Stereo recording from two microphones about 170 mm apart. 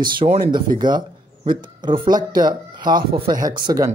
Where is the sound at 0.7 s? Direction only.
25° right (ahead or behind).